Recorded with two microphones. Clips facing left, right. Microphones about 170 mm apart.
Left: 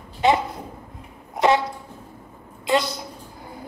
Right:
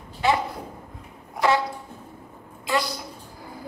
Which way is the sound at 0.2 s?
20° left (ahead or behind).